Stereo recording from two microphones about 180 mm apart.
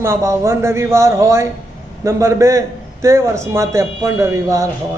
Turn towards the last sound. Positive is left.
turn(degrees=-15)  # may be behind; listen again after turning